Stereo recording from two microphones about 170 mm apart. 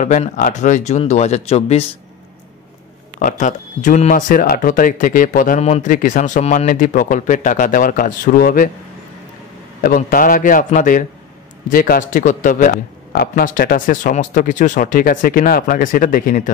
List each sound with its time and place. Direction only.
0.0 s a man's voice: 45° left (ahead or behind)
3.2 s a man's voice: 50° left (ahead or behind)
5.6 s a man's voice: 45° left (ahead or behind)
9.8 s a man's voice: 55° left (ahead or behind)